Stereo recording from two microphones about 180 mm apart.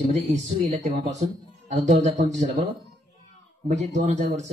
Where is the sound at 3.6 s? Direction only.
40° right (ahead or behind).